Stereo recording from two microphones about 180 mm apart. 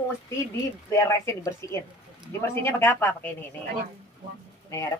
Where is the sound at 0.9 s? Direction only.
15° left (ahead or behind).